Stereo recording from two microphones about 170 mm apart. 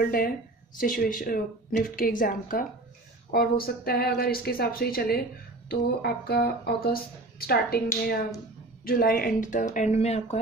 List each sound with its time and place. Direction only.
0.0 s speech: 60° left (ahead or behind); by 10.4 s 40° left (ahead or behind)